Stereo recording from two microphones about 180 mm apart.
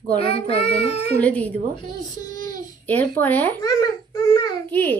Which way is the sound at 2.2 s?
45° right (ahead or behind).